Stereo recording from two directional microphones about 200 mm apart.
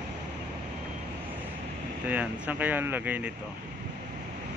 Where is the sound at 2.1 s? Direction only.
10° right (ahead or behind).